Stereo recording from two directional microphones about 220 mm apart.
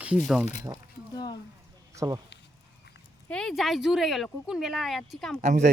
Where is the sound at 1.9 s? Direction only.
15° right (ahead or behind).